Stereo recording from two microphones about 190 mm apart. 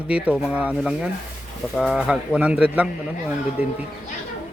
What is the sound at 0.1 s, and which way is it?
A man's voice, 5° right (ahead or behind).